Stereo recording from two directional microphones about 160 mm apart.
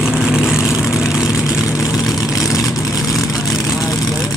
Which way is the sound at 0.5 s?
5° right (ahead or behind).